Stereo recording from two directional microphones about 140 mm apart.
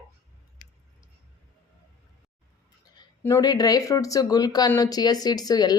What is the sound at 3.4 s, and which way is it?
Speech, 30° left (ahead or behind).